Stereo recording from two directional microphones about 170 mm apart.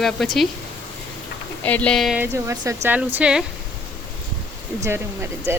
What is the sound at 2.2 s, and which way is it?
Speech, 15° right (ahead or behind).